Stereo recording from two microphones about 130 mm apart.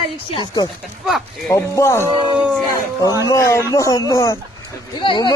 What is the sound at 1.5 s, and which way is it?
Speech, 20° left (ahead or behind).